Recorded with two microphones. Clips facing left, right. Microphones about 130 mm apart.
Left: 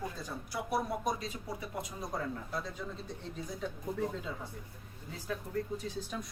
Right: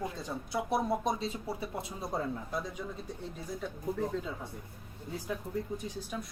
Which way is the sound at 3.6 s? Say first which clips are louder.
Left 2 dB; centre (ahead or behind).